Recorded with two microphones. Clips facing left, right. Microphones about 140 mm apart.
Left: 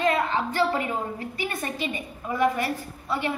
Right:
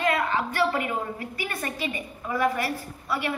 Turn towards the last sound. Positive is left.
turn(degrees=20)  # may be behind; listen again after turning